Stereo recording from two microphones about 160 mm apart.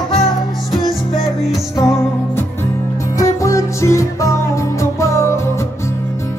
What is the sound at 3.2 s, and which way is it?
Music, 20° left (ahead or behind).